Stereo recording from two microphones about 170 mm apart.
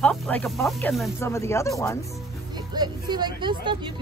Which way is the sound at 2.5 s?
25° right (ahead or behind).